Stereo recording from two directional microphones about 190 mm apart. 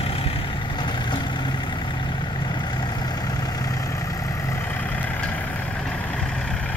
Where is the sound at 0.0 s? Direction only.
30° left (ahead or behind).